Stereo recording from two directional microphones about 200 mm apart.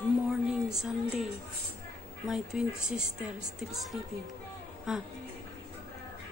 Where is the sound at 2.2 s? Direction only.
5° right (ahead or behind).